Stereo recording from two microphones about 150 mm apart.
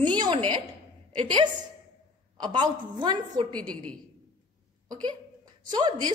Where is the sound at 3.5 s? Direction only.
10° left (ahead or behind).